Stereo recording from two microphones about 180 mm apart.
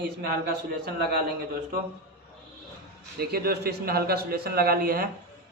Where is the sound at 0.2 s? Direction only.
60° right (ahead or behind).